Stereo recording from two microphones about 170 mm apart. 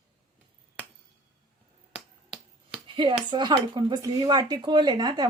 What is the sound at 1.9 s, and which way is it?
Finger snapping, centre (ahead or behind).